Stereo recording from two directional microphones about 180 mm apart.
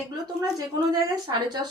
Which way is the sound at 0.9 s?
20° right (ahead or behind).